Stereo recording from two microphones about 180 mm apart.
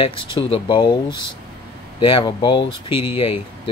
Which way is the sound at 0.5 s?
25° left (ahead or behind).